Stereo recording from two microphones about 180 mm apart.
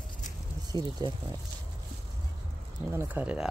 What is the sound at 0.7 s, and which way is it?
Speech, 20° left (ahead or behind).